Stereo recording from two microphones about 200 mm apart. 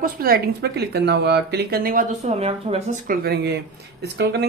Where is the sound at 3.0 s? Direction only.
50° right (ahead or behind).